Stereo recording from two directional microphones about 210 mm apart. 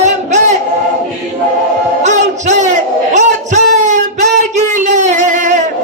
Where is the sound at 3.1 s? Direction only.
35° right (ahead or behind).